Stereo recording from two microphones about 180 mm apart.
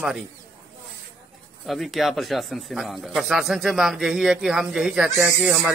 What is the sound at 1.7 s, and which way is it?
Speech, centre (ahead or behind).